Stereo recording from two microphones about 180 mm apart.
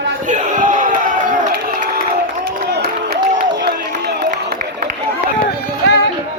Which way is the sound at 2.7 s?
65° right (ahead or behind).